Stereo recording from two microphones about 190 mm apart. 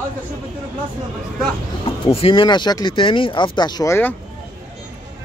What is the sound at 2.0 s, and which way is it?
Speech, 30° left (ahead or behind).